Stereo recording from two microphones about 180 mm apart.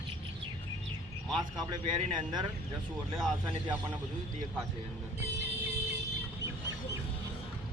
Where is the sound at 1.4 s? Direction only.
25° right (ahead or behind).